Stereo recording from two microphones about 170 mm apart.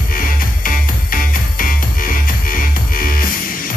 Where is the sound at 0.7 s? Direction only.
55° left (ahead or behind).